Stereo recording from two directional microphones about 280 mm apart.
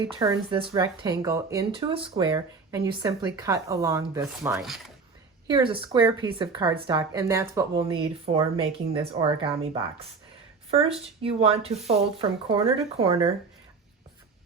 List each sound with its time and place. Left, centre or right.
0.0 s speech: centre
5.5 s speech: centre